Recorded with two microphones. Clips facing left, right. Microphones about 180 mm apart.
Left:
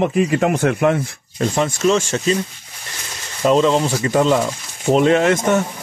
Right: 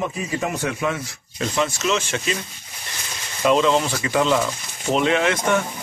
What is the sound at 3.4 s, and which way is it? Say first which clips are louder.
Speech: left 3 dB; 35° left (ahead or behind).